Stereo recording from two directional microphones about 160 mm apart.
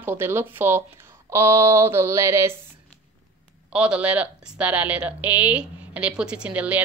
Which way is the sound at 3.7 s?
5° right (ahead or behind).